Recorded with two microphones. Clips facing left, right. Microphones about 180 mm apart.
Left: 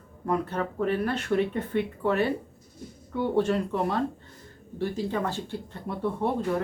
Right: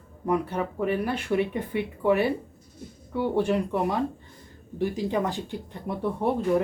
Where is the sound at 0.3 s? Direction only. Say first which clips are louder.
Right 2 dB; 10° right (ahead or behind).